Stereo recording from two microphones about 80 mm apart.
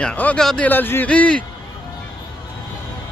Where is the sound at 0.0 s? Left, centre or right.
Centre.